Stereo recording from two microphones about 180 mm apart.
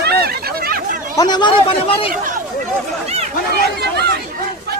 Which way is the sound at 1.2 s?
25° left (ahead or behind).